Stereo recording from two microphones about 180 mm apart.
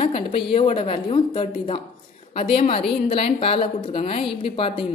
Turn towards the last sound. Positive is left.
turn(degrees=30)  # may be behind; listen again after turning